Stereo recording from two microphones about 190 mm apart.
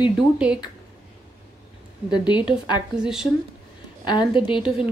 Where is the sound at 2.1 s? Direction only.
20° left (ahead or behind).